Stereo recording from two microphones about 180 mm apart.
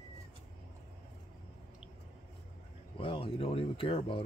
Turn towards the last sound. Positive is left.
turn(degrees=30)  # may be behind; listen again after turning